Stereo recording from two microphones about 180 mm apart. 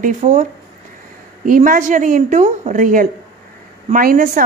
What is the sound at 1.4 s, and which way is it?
Speech, 50° right (ahead or behind).